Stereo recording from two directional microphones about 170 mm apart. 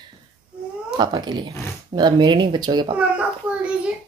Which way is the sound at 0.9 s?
25° right (ahead or behind).